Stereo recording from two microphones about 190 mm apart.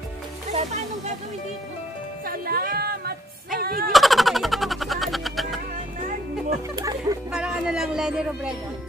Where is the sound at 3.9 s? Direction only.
Centre (ahead or behind).